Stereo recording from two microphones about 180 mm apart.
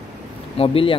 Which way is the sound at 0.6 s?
30° left (ahead or behind).